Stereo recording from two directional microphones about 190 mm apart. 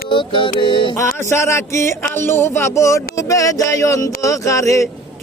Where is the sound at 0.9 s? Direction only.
15° left (ahead or behind).